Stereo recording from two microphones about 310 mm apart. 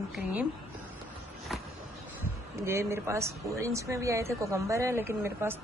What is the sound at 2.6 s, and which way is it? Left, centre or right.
A woman's voice, centre.